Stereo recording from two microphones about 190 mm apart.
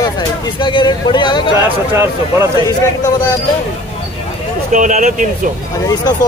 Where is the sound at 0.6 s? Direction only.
25° left (ahead or behind).